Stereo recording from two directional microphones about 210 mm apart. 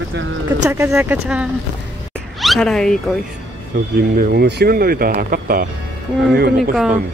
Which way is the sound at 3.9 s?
45° right (ahead or behind).